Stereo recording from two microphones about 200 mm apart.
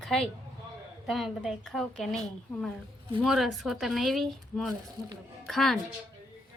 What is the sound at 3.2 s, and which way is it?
A woman's voice, centre (ahead or behind).